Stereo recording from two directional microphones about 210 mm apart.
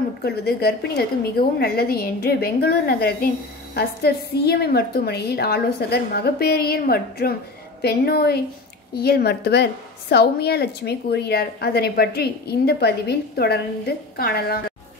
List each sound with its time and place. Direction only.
0.2 s a woman's voice: 50° left (ahead or behind)